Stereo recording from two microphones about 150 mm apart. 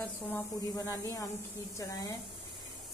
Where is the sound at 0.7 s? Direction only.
20° left (ahead or behind).